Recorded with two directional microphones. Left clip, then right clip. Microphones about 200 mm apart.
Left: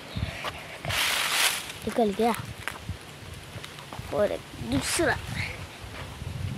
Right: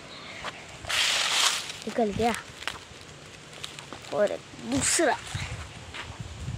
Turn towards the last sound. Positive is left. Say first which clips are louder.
# right 1 dB
turn(degrees=0)  # may be behind; listen again after turning